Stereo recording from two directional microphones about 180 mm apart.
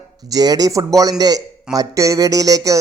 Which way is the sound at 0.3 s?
20° right (ahead or behind).